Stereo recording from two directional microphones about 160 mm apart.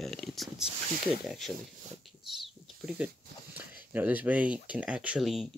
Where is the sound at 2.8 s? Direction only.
10° right (ahead or behind).